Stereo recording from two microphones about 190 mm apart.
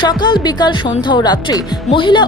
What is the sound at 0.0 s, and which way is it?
Speech, 25° left (ahead or behind).